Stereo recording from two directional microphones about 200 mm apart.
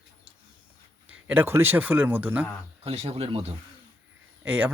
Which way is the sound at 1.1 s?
10° right (ahead or behind).